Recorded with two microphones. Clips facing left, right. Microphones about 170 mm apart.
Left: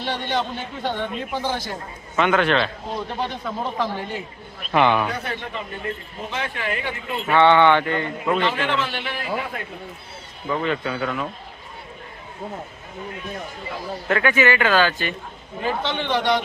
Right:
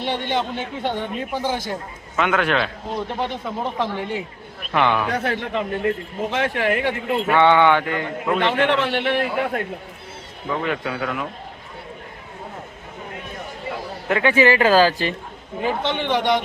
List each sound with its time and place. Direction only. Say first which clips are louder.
0.0 s a man's voice: right 2 dB; 20° right (ahead or behind)
2.1 s a man's voice: left 1 dB; 5° right (ahead or behind)
3.2 s a man's voice: right 1 dB; 20° right (ahead or behind)
4.7 s a man's voice: left 1 dB; 5° left (ahead or behind)
5.1 s a man's voice: right 6 dB; 85° right; by 6.9 s 65° right (ahead or behind)
7.3 s speech: left 1 dB; 10° right (ahead or behind)
8.4 s a man's voice: right 4 dB; 65° right (ahead or behind)
10.5 s speech: left 1 dB; 5° right (ahead or behind)
14.1 s speech: right 3 dB; 25° right (ahead or behind)
15.6 s speech: right 2 dB; 15° right (ahead or behind)